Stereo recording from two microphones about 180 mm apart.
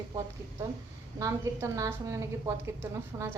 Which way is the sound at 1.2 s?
15° right (ahead or behind).